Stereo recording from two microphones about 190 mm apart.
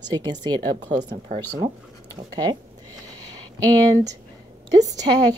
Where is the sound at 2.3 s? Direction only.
20° right (ahead or behind).